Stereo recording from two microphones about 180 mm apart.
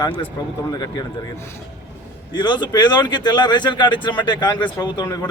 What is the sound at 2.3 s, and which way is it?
Speech, 25° left (ahead or behind).